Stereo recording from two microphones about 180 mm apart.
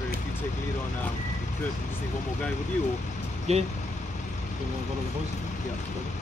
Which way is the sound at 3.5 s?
35° right (ahead or behind).